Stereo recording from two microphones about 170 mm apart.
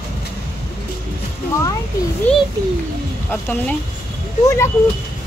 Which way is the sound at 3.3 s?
10° left (ahead or behind).